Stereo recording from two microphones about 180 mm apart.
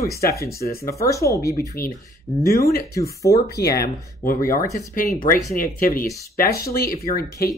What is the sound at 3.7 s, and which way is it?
Speech, 50° left (ahead or behind).